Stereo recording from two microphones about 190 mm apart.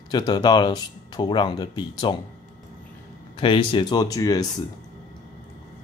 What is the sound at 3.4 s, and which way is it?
Speech, 25° left (ahead or behind).